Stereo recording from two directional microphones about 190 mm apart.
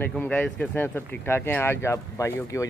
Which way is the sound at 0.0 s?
10° left (ahead or behind).